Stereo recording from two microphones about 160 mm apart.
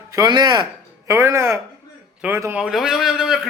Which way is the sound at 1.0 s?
15° right (ahead or behind).